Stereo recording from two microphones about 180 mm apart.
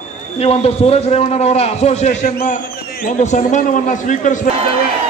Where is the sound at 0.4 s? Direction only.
35° left (ahead or behind).